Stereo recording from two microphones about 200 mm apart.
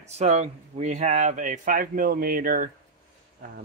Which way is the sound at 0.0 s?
35° right (ahead or behind).